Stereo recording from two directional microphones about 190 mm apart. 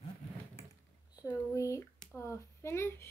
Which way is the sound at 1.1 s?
15° left (ahead or behind).